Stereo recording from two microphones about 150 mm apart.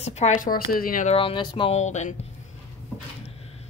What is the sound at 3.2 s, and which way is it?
Cupboard open or close, 40° left (ahead or behind).